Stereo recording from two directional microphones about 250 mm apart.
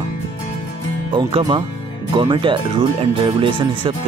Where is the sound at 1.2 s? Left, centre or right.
Centre.